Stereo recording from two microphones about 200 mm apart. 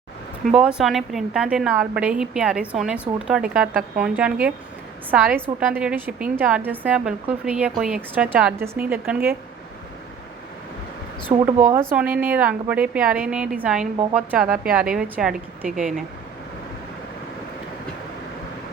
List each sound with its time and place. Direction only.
0.4 s a woman's voice: 5° right (ahead or behind)
11.3 s speech: 25° right (ahead or behind)
11.9 s a woman's voice: 5° right (ahead or behind)